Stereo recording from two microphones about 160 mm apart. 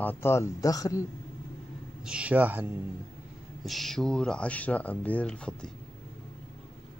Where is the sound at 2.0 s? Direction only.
10° right (ahead or behind).